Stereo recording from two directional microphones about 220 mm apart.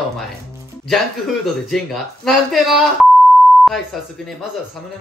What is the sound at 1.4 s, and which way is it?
Speech, centre (ahead or behind).